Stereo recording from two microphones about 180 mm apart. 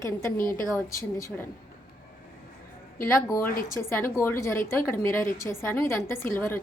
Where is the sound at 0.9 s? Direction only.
15° left (ahead or behind).